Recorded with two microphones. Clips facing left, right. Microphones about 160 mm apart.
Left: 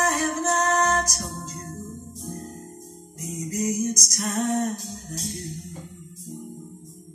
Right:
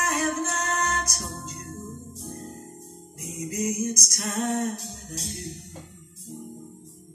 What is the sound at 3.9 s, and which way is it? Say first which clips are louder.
Music: left 3 dB; 30° right (ahead or behind).